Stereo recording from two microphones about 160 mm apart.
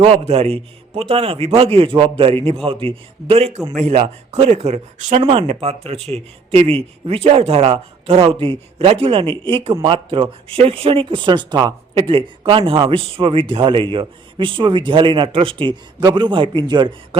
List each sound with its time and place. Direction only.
0.0 s speech: 40° right (ahead or behind)
5.2 s speech: 35° right (ahead or behind)